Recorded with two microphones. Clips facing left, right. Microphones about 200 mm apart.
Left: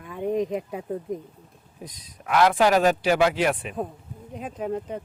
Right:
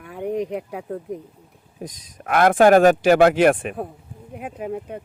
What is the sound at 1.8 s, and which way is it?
Speech, 45° right (ahead or behind).